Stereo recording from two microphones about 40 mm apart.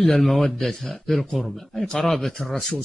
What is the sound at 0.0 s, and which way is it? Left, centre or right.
A man's voice, centre.